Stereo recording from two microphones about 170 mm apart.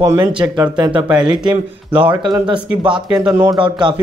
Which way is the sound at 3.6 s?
30° right (ahead or behind).